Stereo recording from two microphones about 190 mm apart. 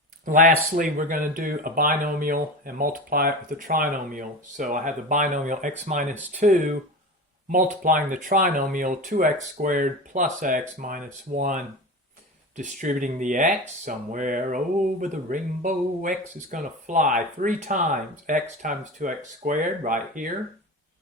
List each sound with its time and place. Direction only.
0.3 s speech: 45° right (ahead or behind)